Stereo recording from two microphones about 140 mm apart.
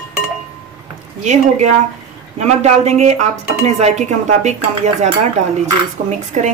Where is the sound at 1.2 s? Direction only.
60° right (ahead or behind).